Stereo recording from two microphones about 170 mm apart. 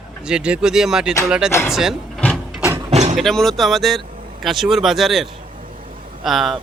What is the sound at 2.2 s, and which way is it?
Printer, 5° left (ahead or behind).